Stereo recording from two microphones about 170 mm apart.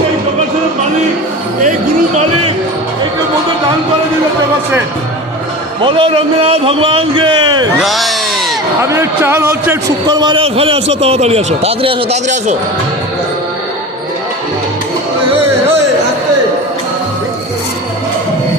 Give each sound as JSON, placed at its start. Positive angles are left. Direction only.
{"t": 5.8, "sound": "a man's voice", "side_deg": -30}
{"t": 7.8, "sound": "speech", "side_deg": 0}
{"t": 8.8, "sound": "speech", "side_deg": -15}
{"t": 10.1, "sound": "a man's voice", "side_deg": -25}